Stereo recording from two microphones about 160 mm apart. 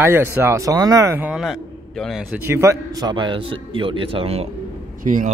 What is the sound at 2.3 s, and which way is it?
A man's voice, 15° right (ahead or behind).